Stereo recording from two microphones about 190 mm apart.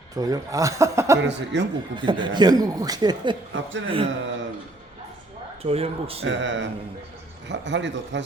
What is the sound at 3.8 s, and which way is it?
Speech, 30° right (ahead or behind).